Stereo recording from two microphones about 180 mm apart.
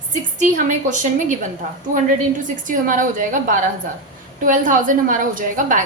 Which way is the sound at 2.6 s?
45° right (ahead or behind).